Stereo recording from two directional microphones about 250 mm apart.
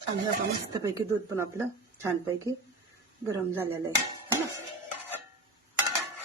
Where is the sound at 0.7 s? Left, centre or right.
Centre.